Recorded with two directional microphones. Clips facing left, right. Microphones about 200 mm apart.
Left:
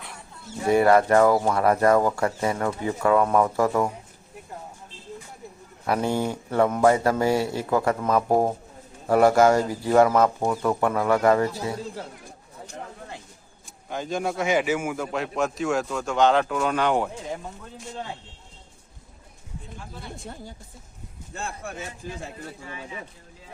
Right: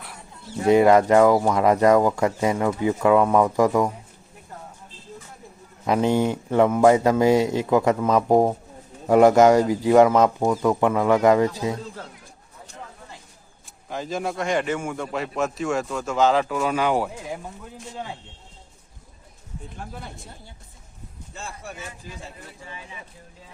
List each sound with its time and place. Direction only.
0.7 s speech: 15° right (ahead or behind)
5.8 s speech: 20° right (ahead or behind)
13.9 s a man's voice: centre (ahead or behind)
21.3 s speech: 55° left (ahead or behind)